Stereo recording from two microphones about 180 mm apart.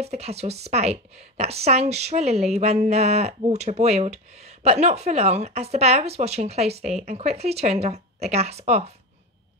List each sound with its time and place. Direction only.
0.0 s a woman's voice: 35° right (ahead or behind)